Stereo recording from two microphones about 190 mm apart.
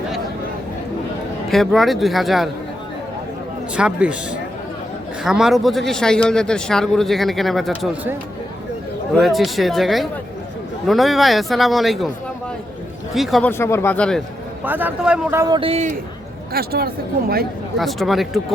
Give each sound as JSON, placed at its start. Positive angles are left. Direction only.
{"t": 1.5, "sound": "speech", "side_deg": 0}
{"t": 3.8, "sound": "speech", "side_deg": -5}
{"t": 5.2, "sound": "speech", "side_deg": 0}
{"t": 7.7, "sound": "a man's voice", "side_deg": -10}
{"t": 9.1, "sound": "speech", "side_deg": 0}
{"t": 13.1, "sound": "speech", "side_deg": 0}
{"t": 13.5, "sound": "speech", "side_deg": 15}
{"t": 14.6, "sound": "a man's voice", "side_deg": -10}
{"t": 16.5, "sound": "speech", "side_deg": -55}
{"t": 17.7, "sound": "speech", "side_deg": 0}